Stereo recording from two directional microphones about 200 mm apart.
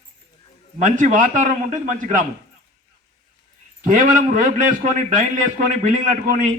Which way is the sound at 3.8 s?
40° right (ahead or behind).